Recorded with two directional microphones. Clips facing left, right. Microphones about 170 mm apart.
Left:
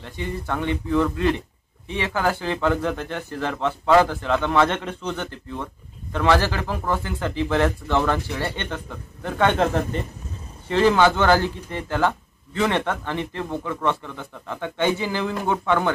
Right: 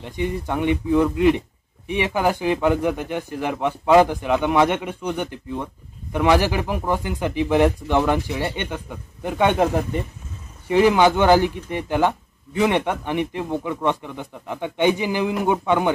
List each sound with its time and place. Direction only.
0.0 s speech: 15° right (ahead or behind)